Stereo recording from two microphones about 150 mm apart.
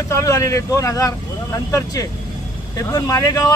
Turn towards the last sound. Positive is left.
turn(degrees=25)  # may be behind; listen again after turning